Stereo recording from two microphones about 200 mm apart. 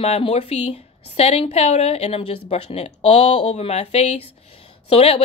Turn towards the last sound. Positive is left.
turn(degrees=30)  # may be behind; listen again after turning